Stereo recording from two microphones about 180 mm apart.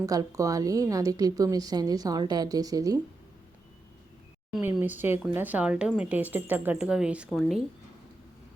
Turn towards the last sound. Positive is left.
turn(degrees=0)  # may be behind; listen again after turning